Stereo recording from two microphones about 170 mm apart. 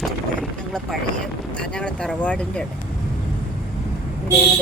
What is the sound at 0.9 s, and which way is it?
Speech, centre (ahead or behind).